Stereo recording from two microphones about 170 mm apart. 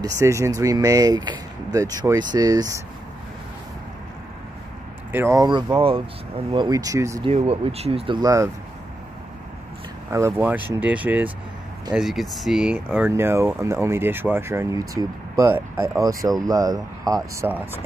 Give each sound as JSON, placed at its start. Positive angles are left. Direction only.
{"t": 0.0, "sound": "speech", "side_deg": -20}
{"t": 5.1, "sound": "speech", "side_deg": -15}
{"t": 7.2, "sound": "speech", "side_deg": -35}
{"t": 8.2, "sound": "speech", "side_deg": -20}
{"t": 10.1, "sound": "speech", "side_deg": -15}
{"t": 17.5, "sound": "speech", "side_deg": -10}